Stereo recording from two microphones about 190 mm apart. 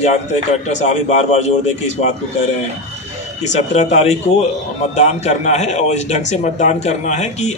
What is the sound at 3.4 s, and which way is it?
A man's voice, 35° left (ahead or behind).